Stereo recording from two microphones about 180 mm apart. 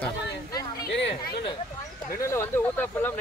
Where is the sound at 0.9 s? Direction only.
65° left (ahead or behind).